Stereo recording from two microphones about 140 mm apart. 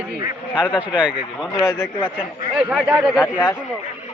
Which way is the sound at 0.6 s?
10° right (ahead or behind).